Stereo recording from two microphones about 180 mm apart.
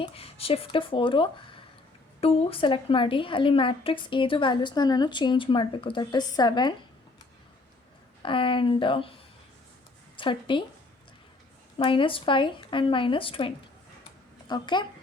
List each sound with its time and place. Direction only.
0.0 s a woman's voice: 30° left (ahead or behind)
8.2 s a woman's voice: 30° left (ahead or behind)
10.2 s a woman's voice: 25° left (ahead or behind)
11.8 s a woman's voice: 30° left (ahead or behind)